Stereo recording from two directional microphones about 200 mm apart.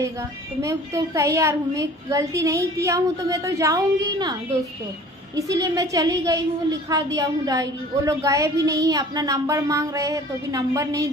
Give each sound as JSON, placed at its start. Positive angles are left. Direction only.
{"t": 0.6, "sound": "a woman's voice", "side_deg": -15}